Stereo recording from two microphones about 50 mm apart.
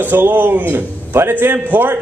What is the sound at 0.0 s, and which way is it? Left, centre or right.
A man's voice, right.